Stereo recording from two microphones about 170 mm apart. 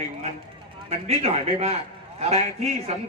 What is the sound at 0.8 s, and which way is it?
Speech, 40° right (ahead or behind).